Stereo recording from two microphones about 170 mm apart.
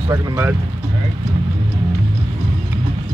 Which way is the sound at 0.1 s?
20° right (ahead or behind).